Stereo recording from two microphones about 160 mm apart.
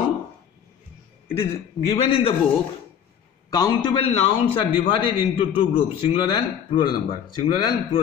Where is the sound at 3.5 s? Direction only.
25° left (ahead or behind).